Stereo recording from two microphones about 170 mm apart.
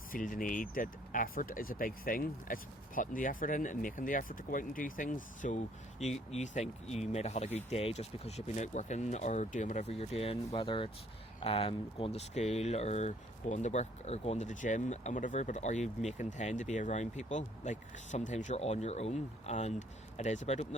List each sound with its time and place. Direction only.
0.1 s speech: 55° left (ahead or behind)